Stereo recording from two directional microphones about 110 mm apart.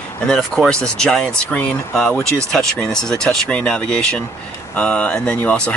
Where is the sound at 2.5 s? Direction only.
5° left (ahead or behind).